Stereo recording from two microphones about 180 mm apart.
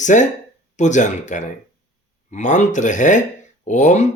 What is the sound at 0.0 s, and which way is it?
Speech, 45° left (ahead or behind).